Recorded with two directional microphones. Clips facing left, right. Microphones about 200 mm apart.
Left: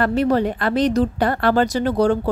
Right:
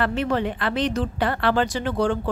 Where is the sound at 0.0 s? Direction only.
40° left (ahead or behind).